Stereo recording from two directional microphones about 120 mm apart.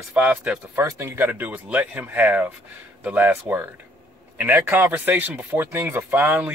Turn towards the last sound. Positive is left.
turn(degrees=-15)  # may be behind; listen again after turning